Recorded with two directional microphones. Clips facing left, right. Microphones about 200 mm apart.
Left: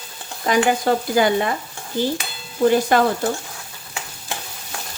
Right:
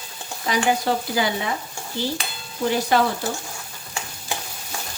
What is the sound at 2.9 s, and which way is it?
Stir, 50° left (ahead or behind).